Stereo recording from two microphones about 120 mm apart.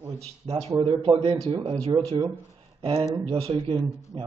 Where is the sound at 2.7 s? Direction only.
50° right (ahead or behind).